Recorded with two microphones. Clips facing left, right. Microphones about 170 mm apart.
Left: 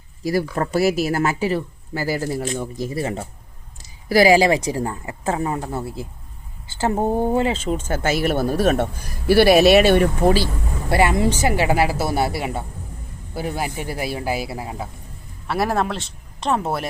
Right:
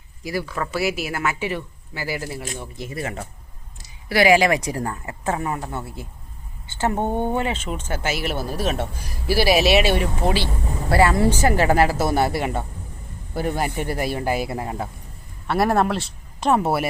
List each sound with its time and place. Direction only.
0.5 s speech: 40° left (ahead or behind)
7.0 s speech: 5° left (ahead or behind)
7.3 s speech: 35° left (ahead or behind)
10.8 s speech: 20° left (ahead or behind); by 16.9 s 5° right (ahead or behind)